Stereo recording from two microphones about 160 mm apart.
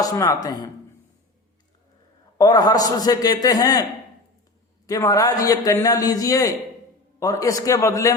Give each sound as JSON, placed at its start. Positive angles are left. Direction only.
{"t": 0.0, "sound": "a man's voice", "side_deg": 20}
{"t": 2.4, "sound": "a man's voice", "side_deg": 25}
{"t": 4.9, "sound": "a man's voice", "side_deg": 20}